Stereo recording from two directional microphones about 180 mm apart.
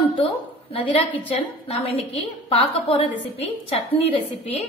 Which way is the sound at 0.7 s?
30° left (ahead or behind).